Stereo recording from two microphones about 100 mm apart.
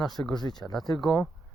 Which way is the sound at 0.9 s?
5° left (ahead or behind).